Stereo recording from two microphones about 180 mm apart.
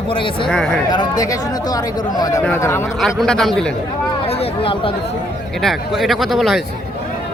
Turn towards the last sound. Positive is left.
turn(degrees=0)  # may be behind; listen again after turning